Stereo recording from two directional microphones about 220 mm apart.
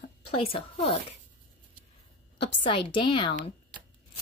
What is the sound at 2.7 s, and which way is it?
Speech, 20° left (ahead or behind).